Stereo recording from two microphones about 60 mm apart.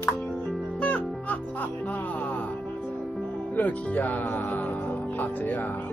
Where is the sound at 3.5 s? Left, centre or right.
Left.